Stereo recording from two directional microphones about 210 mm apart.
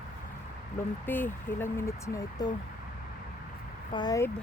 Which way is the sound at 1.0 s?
10° left (ahead or behind).